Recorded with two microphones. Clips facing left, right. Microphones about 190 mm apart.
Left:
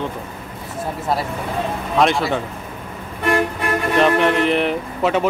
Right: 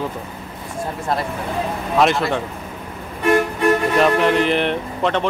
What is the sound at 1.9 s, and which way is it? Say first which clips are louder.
Speech: even; centre (ahead or behind).